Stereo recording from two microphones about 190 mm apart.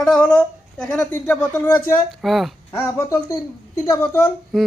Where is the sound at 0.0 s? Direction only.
5° left (ahead or behind).